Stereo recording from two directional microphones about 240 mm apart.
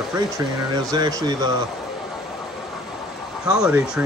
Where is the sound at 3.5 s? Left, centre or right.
Centre.